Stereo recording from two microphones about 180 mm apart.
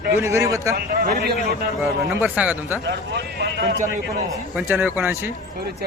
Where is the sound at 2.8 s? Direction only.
75° right (ahead or behind).